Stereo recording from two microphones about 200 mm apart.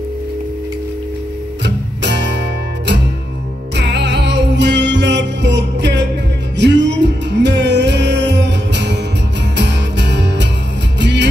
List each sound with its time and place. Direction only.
1.6 s music: 60° right (ahead or behind)
3.7 s music: 60° right (ahead or behind)